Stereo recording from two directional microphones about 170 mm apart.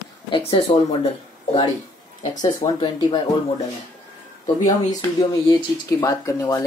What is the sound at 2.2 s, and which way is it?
Speech, 30° left (ahead or behind).